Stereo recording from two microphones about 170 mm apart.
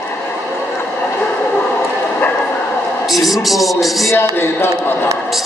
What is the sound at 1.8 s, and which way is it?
Vehicle, 10° left (ahead or behind).